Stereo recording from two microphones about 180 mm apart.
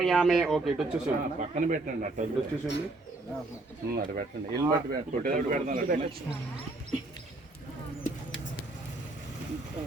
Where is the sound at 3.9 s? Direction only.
55° right (ahead or behind).